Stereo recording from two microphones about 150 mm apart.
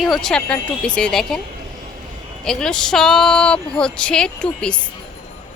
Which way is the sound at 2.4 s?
5° left (ahead or behind).